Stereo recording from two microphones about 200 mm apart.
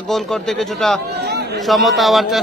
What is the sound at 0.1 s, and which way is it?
Speech, centre (ahead or behind).